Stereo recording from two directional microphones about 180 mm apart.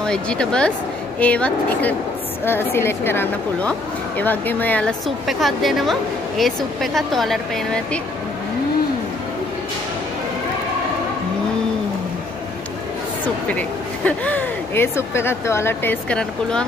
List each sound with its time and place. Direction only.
0.0 s a woman's voice: 5° left (ahead or behind)
13.5 s a woman's voice: 10° left (ahead or behind)